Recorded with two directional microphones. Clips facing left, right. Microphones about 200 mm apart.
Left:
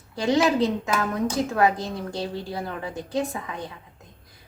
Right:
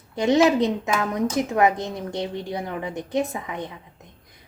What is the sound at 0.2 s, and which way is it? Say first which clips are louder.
A woman's voice: right 3 dB; 20° right (ahead or behind).